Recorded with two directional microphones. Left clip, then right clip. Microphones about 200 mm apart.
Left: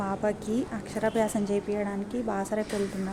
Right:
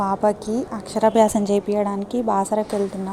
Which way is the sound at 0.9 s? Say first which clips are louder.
Right 11 dB; 30° right (ahead or behind).